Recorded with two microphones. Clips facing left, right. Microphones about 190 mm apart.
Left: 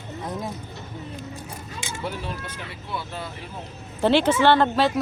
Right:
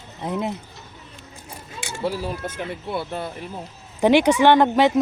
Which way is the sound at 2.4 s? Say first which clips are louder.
Right 7 dB; 50° right (ahead or behind).